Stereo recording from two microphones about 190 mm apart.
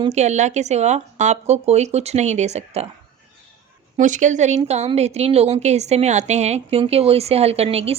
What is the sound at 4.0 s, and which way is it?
Speech, 40° right (ahead or behind).